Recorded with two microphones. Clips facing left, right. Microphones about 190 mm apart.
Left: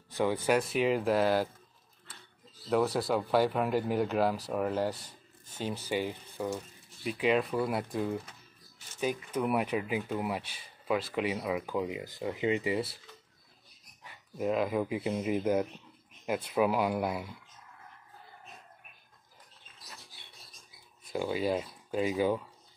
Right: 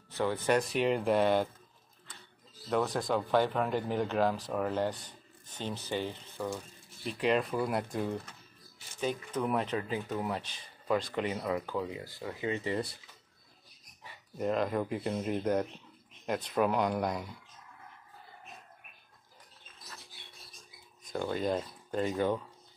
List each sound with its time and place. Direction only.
0.1 s speech: 10° left (ahead or behind)
2.7 s speech: 10° left (ahead or behind)
14.3 s speech: 5° left (ahead or behind)
21.0 s speech: 5° left (ahead or behind)